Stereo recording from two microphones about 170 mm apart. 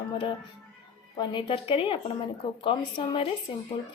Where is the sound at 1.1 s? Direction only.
25° left (ahead or behind).